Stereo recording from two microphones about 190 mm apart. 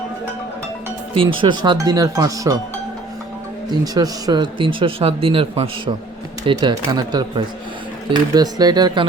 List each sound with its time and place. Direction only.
1.4 s speech: 25° right (ahead or behind)
3.7 s speech: 20° right (ahead or behind)